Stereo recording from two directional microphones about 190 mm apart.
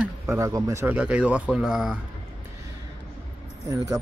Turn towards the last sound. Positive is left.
turn(degrees=-20)  # may be behind; listen again after turning